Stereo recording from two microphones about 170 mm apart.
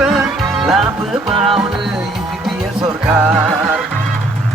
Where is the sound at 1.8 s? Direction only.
Centre (ahead or behind).